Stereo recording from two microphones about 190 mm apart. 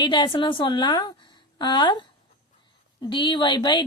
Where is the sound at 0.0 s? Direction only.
25° left (ahead or behind).